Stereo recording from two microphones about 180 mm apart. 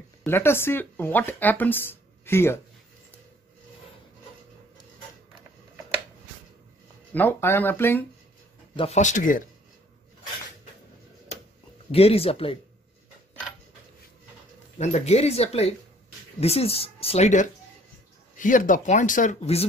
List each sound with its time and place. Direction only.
0.2 s speech: 15° left (ahead or behind)
7.2 s speech: 10° left (ahead or behind)
8.7 s speech: 35° left (ahead or behind)
11.9 s speech: 35° left (ahead or behind)
14.8 s speech: 40° left (ahead or behind)